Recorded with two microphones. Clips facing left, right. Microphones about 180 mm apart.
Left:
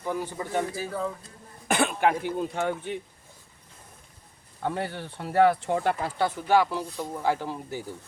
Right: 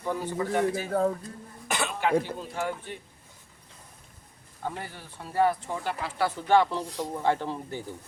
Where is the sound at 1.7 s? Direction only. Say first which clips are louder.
Left 5 dB; 55° left (ahead or behind).